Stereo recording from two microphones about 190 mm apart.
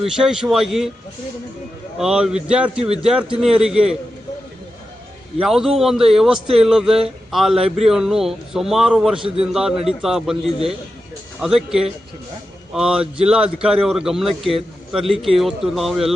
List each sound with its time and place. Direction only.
0.0 s a man's voice: 5° right (ahead or behind)
2.0 s a man's voice: 5° right (ahead or behind)
5.4 s a man's voice: 5° right (ahead or behind)
9.1 s a man's voice: 25° right (ahead or behind)
9.4 s a man's voice: 5° right (ahead or behind)